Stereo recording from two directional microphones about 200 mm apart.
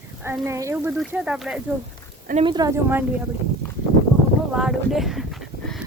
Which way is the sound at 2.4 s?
20° right (ahead or behind).